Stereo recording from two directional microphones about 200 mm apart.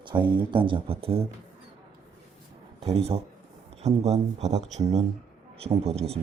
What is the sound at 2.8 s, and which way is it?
Speech, 30° right (ahead or behind).